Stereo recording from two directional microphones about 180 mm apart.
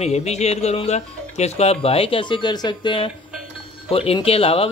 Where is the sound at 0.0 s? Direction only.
35° left (ahead or behind).